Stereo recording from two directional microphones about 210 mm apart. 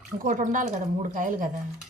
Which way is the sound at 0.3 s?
35° right (ahead or behind).